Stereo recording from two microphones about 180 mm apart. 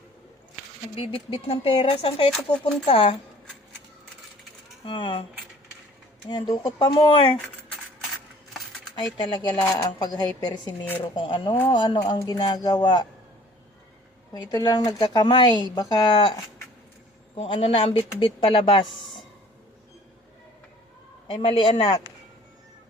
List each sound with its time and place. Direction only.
0.9 s speech: 30° left (ahead or behind)
4.9 s speech: 30° left (ahead or behind)
6.2 s speech: 25° left (ahead or behind)
9.1 s speech: 25° left (ahead or behind)
14.3 s speech: 25° left (ahead or behind)
18.9 s a sound: centre (ahead or behind)
21.2 s speech: 30° left (ahead or behind)